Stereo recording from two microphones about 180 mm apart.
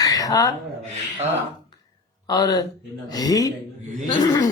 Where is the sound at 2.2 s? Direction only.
20° left (ahead or behind).